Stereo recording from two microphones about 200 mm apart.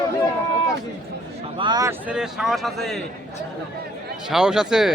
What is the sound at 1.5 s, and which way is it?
Speech, 20° right (ahead or behind).